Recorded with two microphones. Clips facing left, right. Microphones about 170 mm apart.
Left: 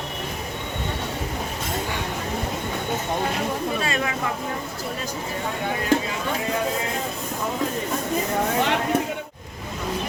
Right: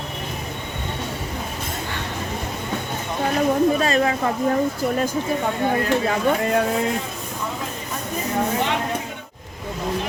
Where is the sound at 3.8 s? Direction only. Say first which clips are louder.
Right 6 dB; 40° right (ahead or behind).